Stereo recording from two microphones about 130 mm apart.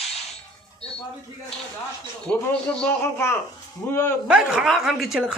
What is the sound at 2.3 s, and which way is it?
Speech, 10° left (ahead or behind).